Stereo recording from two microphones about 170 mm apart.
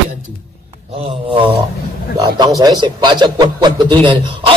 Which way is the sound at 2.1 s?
25° right (ahead or behind).